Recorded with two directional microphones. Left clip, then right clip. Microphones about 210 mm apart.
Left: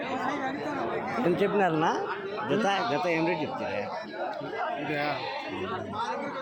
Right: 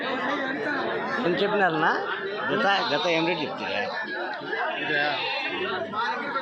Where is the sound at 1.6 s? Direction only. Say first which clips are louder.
Right 3 dB; 20° left (ahead or behind).